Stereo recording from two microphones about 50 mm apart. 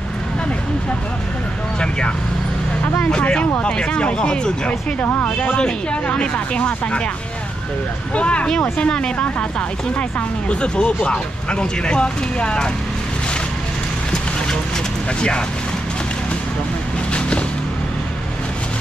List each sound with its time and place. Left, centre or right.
1.8 s speech: centre
5.0 s speech: left
6.0 s speech: left
8.1 s speech: left
10.5 s speech: left
15.1 s speech: centre